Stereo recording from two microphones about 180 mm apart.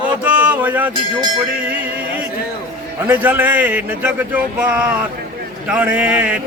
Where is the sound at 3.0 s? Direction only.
10° right (ahead or behind).